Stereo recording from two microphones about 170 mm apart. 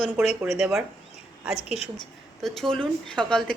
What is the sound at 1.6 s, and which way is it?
Speech, 40° left (ahead or behind).